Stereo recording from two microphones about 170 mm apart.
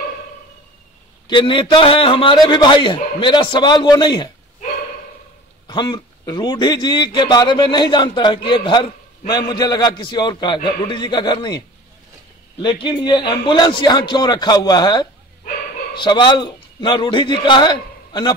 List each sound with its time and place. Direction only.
1.2 s a man's voice: 25° left (ahead or behind)
5.7 s a man's voice: 25° left (ahead or behind)
12.8 s a man's voice: 25° left (ahead or behind)